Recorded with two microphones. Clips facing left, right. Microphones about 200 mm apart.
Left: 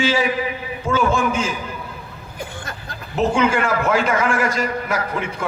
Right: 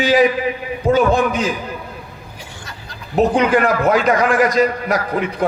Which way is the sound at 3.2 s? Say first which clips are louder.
Right 4 dB; 35° right (ahead or behind).